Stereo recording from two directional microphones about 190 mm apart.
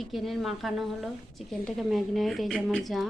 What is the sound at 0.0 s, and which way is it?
A woman's voice, centre (ahead or behind).